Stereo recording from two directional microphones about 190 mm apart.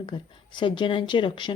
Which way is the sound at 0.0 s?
25° left (ahead or behind).